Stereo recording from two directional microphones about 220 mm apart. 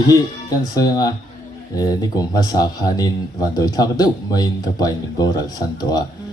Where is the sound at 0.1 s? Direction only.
15° left (ahead or behind).